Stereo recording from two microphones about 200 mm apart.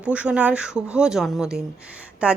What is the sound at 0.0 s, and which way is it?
Speech, 5° right (ahead or behind).